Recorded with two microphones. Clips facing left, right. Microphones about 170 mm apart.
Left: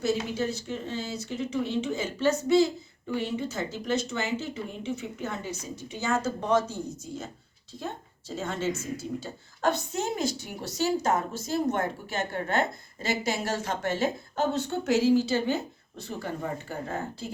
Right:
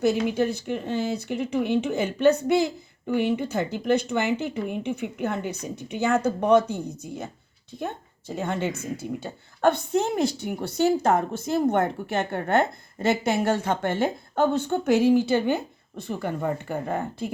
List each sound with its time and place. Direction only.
0.0 s a woman's voice: 60° right (ahead or behind)
8.4 s a woman's voice: 60° right (ahead or behind)